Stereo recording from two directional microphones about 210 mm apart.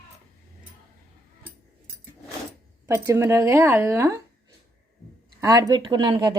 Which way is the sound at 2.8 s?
10° right (ahead or behind).